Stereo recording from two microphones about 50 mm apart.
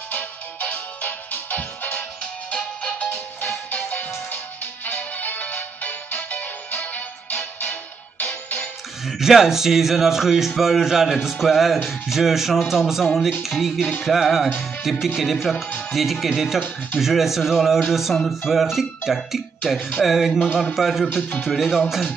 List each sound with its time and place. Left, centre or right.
0.1 s music: left
2.5 s music: left
9.0 s speech: centre
21.1 s speech: left
21.5 s speech: centre